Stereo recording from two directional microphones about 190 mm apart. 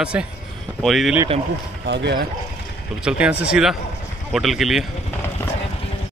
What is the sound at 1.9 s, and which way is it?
Speech, 65° right (ahead or behind).